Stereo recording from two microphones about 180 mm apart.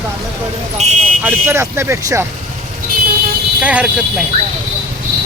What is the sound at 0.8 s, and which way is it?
Speech, 40° right (ahead or behind).